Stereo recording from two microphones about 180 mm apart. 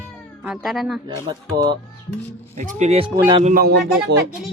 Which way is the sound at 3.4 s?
50° right (ahead or behind).